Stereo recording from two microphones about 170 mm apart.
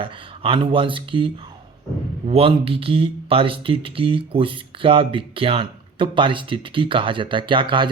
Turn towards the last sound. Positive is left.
turn(degrees=-30)  # may be behind; listen again after turning